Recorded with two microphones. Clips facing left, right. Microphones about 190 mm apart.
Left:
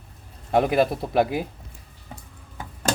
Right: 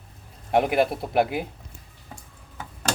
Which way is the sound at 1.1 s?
20° right (ahead or behind).